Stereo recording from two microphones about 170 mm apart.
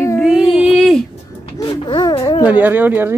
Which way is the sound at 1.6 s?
30° left (ahead or behind).